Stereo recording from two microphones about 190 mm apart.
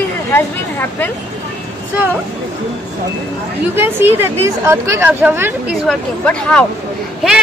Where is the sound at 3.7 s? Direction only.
10° right (ahead or behind).